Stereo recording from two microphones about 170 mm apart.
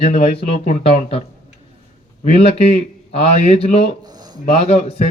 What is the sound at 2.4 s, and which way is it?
Speech, 40° left (ahead or behind).